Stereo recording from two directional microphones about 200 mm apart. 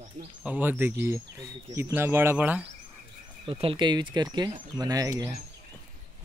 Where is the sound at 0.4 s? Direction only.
10° right (ahead or behind).